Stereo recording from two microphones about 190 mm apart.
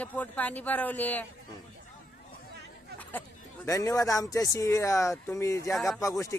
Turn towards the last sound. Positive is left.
turn(degrees=10)  # may be behind; listen again after turning